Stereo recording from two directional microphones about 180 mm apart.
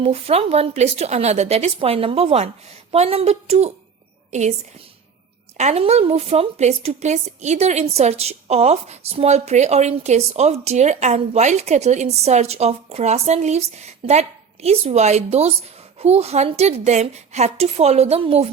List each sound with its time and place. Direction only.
0.0 s a woman's voice: 35° right (ahead or behind)
5.5 s speech: 35° right (ahead or behind)